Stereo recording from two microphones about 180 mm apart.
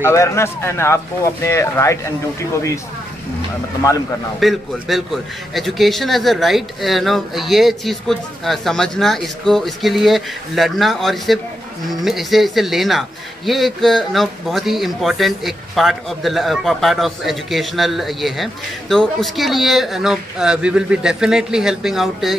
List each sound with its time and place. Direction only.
0.0 s speech: 15° left (ahead or behind)
4.4 s a man's voice: centre (ahead or behind)